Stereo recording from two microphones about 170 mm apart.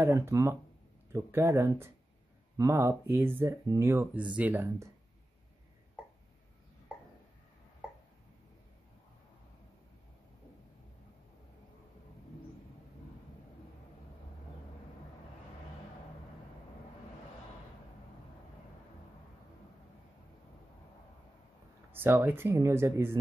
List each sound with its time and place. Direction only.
0.0 s speech: 15° right (ahead or behind)
21.9 s speech: 10° right (ahead or behind)